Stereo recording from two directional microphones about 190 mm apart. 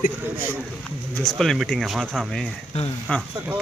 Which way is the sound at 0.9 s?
5° left (ahead or behind).